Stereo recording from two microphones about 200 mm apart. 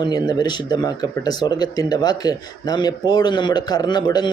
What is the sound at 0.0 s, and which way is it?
A man's voice, 20° left (ahead or behind).